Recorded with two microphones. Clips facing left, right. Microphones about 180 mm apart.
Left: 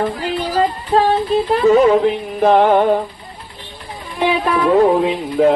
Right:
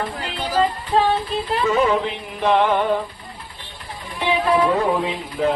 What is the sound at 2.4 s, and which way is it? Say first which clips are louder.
Music: left 6 dB; 45° left (ahead or behind).